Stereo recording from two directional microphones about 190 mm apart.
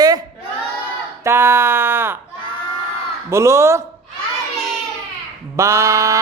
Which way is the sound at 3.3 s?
15° right (ahead or behind).